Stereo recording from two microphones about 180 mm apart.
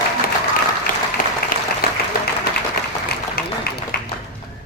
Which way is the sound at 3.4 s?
60° left (ahead or behind).